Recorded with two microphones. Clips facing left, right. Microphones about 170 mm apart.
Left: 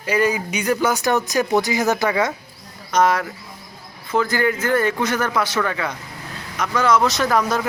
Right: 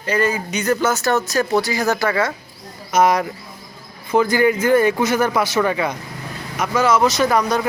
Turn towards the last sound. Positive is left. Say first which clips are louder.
# right 2 dB
turn(degrees=0)  # may be behind; listen again after turning